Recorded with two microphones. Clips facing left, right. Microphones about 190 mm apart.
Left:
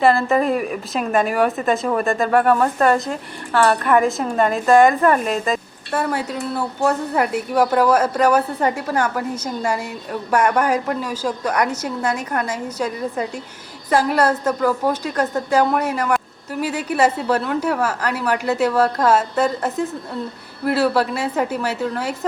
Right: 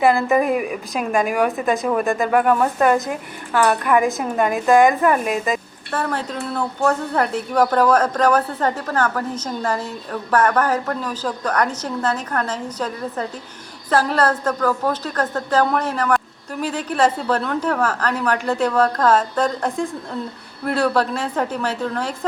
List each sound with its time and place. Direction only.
0.0 s a woman's voice: 15° right (ahead or behind)
0.3 s a woman's voice: 5° right (ahead or behind)
5.9 s speech: 10° left (ahead or behind)